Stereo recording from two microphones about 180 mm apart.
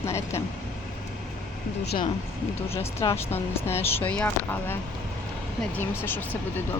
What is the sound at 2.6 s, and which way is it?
Speech, 15° left (ahead or behind).